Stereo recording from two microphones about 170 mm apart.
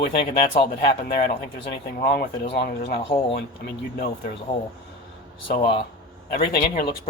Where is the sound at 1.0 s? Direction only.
65° left (ahead or behind).